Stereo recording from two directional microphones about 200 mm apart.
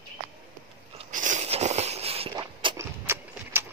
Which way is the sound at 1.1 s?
40° right (ahead or behind).